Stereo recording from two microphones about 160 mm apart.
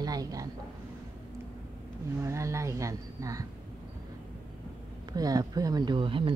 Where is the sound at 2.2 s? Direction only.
20° right (ahead or behind).